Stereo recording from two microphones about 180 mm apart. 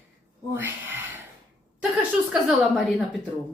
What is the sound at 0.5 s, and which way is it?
Speech, 10° right (ahead or behind).